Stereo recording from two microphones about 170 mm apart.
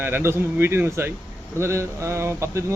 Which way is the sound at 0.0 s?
15° right (ahead or behind).